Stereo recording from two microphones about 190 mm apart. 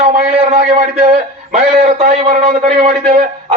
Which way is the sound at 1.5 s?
35° right (ahead or behind).